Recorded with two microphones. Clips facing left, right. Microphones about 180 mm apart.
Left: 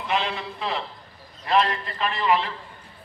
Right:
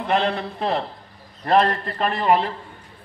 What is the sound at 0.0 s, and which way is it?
A man's voice, 55° right (ahead or behind).